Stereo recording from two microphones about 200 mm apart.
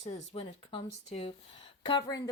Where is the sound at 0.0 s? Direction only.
30° left (ahead or behind).